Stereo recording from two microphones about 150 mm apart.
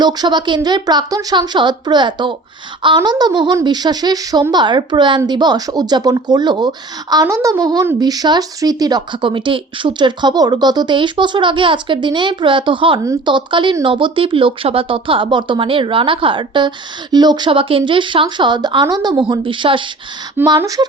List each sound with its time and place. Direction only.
0.0 s speech: 30° right (ahead or behind)